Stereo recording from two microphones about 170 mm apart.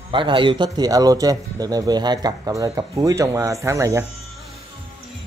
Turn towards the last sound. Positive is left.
turn(degrees=-15)  # may be behind; listen again after turning